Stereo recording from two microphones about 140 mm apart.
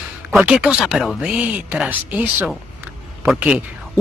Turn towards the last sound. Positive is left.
turn(degrees=-10)  # may be behind; listen again after turning